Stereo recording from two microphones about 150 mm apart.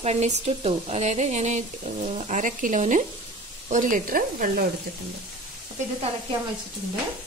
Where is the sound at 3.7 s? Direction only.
65° right (ahead or behind).